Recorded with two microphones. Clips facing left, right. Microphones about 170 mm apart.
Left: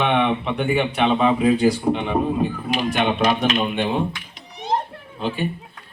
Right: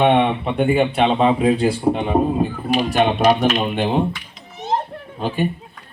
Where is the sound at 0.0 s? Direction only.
35° right (ahead or behind).